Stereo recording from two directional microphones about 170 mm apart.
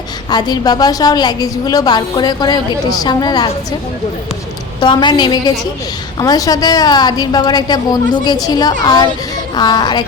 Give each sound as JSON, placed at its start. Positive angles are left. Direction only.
{"t": 0.3, "sound": "a woman's voice", "side_deg": 25}
{"t": 4.8, "sound": "a woman's voice", "side_deg": 25}